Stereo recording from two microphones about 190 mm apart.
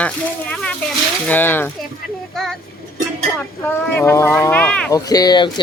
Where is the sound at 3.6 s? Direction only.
10° left (ahead or behind).